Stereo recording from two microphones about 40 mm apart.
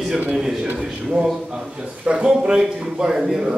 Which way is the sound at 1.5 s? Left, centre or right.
Right.